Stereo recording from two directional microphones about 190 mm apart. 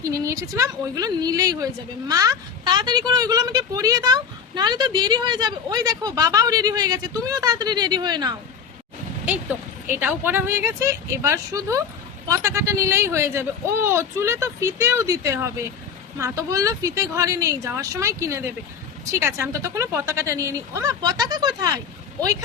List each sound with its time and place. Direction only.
0.1 s speech: 15° right (ahead or behind)
9.9 s speech: 10° right (ahead or behind)